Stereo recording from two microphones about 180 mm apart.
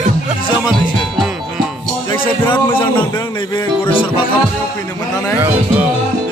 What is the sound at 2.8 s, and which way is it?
Speech, 25° left (ahead or behind).